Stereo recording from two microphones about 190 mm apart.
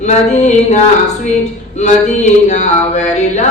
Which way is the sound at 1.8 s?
40° left (ahead or behind).